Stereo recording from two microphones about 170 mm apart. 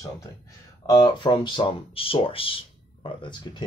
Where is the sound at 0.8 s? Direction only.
25° left (ahead or behind).